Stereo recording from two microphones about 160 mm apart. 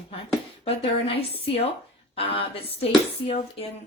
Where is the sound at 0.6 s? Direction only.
40° left (ahead or behind).